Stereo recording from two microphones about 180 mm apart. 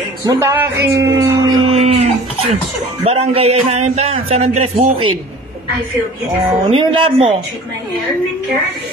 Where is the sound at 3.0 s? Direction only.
35° right (ahead or behind).